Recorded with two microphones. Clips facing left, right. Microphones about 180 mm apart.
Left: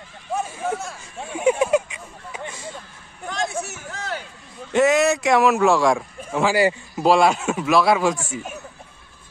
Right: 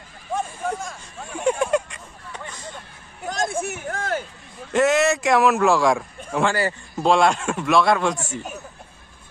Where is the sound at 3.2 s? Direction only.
45° right (ahead or behind).